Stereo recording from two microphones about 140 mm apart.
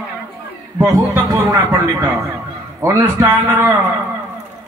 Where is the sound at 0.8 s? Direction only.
25° right (ahead or behind).